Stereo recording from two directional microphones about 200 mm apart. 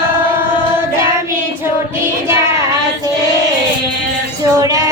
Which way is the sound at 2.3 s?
15° right (ahead or behind).